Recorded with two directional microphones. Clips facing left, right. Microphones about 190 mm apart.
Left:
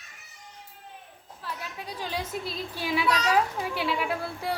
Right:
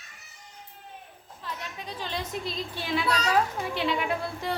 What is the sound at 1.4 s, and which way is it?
A woman's voice, 5° left (ahead or behind).